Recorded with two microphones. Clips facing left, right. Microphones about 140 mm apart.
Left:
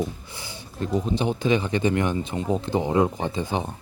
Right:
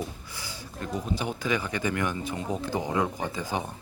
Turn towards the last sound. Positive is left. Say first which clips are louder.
# left 4 dB
turn(degrees=25)  # may be behind; listen again after turning